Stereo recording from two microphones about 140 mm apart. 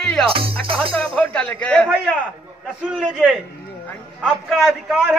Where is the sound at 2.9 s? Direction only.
5° right (ahead or behind).